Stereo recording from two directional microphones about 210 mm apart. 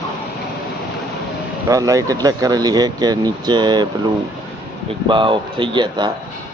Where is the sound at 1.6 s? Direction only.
15° right (ahead or behind).